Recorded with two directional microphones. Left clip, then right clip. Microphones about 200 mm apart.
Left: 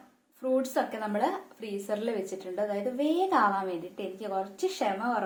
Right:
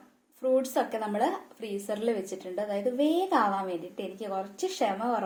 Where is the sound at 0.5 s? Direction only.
25° right (ahead or behind).